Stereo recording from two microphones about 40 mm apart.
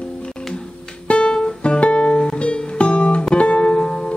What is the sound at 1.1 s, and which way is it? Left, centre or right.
Music, left.